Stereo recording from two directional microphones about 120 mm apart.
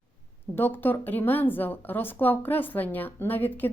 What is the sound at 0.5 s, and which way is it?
Speech, 15° left (ahead or behind).